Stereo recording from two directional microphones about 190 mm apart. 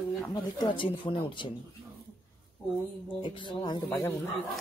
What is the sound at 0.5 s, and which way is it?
Speech, 25° left (ahead or behind).